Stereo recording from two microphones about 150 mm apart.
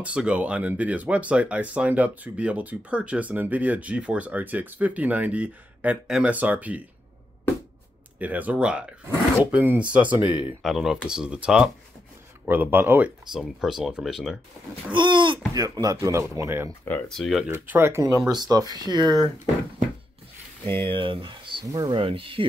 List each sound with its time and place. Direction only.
0.0 s speech: 10° right (ahead or behind)
8.2 s speech: 10° right (ahead or behind)
14.9 s speech: 30° right (ahead or behind); by 16.7 s 15° right (ahead or behind)
17.1 s speech: centre (ahead or behind)
17.5 s speech: 15° right (ahead or behind)
20.7 s speech: 35° right (ahead or behind)